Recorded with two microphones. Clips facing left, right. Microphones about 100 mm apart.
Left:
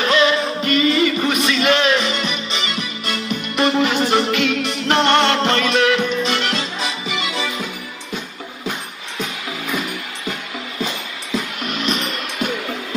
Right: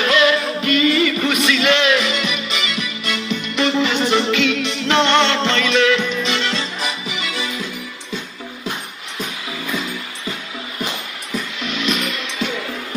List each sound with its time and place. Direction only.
0.0 s music: 35° left (ahead or behind); by 6.6 s 55° left (ahead or behind)
11.6 s music: 45° left (ahead or behind)